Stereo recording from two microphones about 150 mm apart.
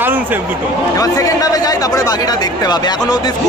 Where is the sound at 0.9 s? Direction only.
25° left (ahead or behind).